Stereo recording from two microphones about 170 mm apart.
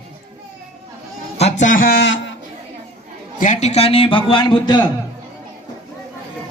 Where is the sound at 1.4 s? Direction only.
40° left (ahead or behind); by 2.2 s 80° left.